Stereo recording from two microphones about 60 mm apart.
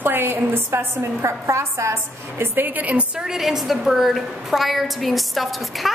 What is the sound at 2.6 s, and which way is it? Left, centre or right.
Speech, right.